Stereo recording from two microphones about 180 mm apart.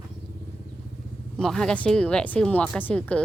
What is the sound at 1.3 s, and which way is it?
Speech, 5° left (ahead or behind).